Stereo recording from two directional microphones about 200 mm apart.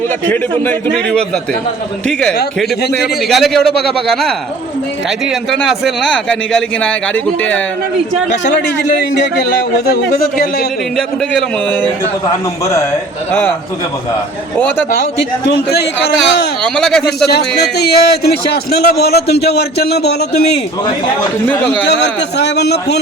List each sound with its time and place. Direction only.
0.6 s a man's voice: 5° left (ahead or behind)
2.9 s speech: centre (ahead or behind)
13.3 s a man's voice: 10° left (ahead or behind)
15.4 s a man's voice: 55° left (ahead or behind)
16.6 s speech: 5° left (ahead or behind)
17.6 s a man's voice: 55° left (ahead or behind)
21.4 s a man's voice: 5° left (ahead or behind)
22.4 s a man's voice: 55° left (ahead or behind)